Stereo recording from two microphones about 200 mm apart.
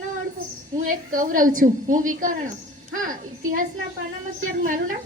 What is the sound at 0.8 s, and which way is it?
A woman's voice, 40° right (ahead or behind).